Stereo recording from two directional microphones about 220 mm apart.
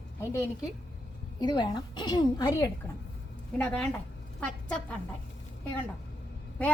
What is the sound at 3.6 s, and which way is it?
A woman's voice, 5° left (ahead or behind).